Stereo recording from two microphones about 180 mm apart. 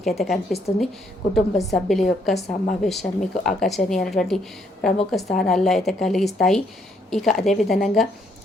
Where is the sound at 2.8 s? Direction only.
Centre (ahead or behind).